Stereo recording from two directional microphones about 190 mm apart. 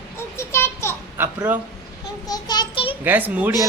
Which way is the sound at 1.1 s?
10° right (ahead or behind).